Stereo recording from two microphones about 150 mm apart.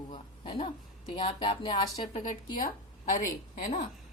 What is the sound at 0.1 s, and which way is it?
A woman's voice, 35° left (ahead or behind).